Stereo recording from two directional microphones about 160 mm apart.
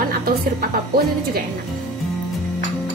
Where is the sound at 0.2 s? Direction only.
70° right (ahead or behind).